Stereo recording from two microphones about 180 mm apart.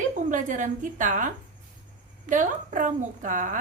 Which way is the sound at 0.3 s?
45° right (ahead or behind).